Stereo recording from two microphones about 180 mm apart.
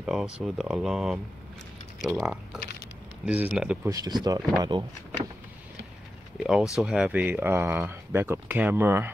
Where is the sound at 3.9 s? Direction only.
20° right (ahead or behind).